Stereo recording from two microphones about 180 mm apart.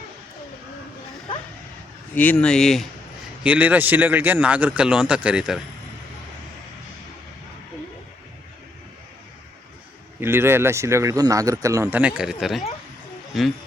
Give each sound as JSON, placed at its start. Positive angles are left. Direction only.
{"t": 2.1, "sound": "speech", "side_deg": 10}
{"t": 3.4, "sound": "speech", "side_deg": -10}
{"t": 10.2, "sound": "speech", "side_deg": -15}